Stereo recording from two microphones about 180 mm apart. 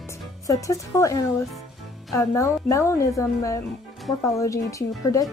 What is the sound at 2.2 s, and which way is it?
A woman's voice, 15° left (ahead or behind).